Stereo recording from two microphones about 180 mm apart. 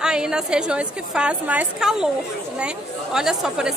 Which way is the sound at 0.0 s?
5° right (ahead or behind).